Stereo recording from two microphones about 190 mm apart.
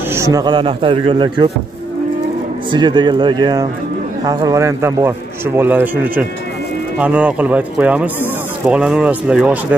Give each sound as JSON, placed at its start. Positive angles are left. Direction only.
{"t": 0.1, "sound": "speech", "side_deg": -15}
{"t": 2.7, "sound": "a man's voice", "side_deg": -25}